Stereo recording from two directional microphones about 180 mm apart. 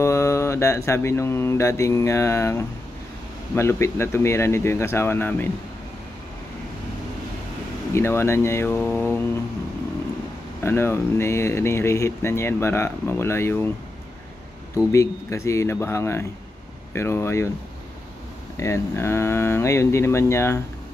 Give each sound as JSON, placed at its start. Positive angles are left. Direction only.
{"t": 0.0, "sound": "mantra", "side_deg": 15}
{"t": 3.5, "sound": "speech", "side_deg": 15}
{"t": 7.9, "sound": "speech", "side_deg": 15}
{"t": 10.6, "sound": "speech", "side_deg": 15}
{"t": 14.9, "sound": "speech", "side_deg": 15}
{"t": 18.6, "sound": "speech", "side_deg": 15}